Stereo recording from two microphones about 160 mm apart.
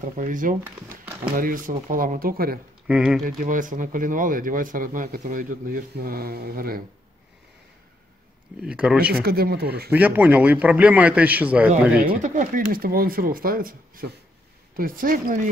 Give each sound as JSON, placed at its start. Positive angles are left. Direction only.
{"t": 0.0, "sound": "speech", "side_deg": -55}
{"t": 2.9, "sound": "speech", "side_deg": -5}
{"t": 3.3, "sound": "speech", "side_deg": -55}
{"t": 8.6, "sound": "a man's voice", "side_deg": -5}
{"t": 9.1, "sound": "speech", "side_deg": -75}
{"t": 9.8, "sound": "a man's voice", "side_deg": -10}
{"t": 12.2, "sound": "speech", "side_deg": -55}